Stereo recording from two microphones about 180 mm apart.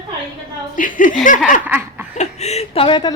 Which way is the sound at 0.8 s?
50° left (ahead or behind).